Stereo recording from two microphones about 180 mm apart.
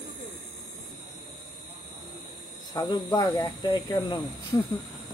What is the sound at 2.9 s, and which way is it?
Speech, 25° left (ahead or behind).